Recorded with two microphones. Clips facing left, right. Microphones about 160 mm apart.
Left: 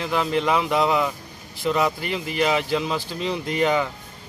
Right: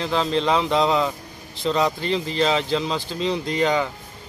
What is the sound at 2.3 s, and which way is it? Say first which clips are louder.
Speech: left 1 dB; 15° left (ahead or behind).